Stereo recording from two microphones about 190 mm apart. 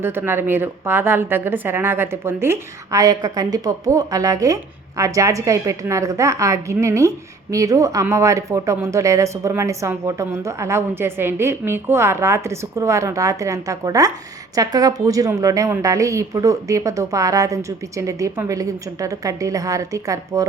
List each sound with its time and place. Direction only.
0.0 s a woman's voice: 10° right (ahead or behind)